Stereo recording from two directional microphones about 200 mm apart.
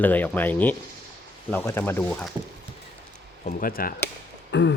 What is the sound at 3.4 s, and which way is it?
Speech, 45° left (ahead or behind).